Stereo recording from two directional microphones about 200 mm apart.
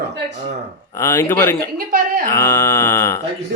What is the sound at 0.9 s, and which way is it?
Mantra, 15° left (ahead or behind).